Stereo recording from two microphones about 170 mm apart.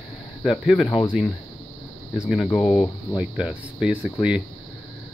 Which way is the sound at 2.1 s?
5° right (ahead or behind).